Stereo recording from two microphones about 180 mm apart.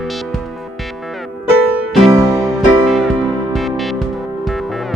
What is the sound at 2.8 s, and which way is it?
Music, centre (ahead or behind).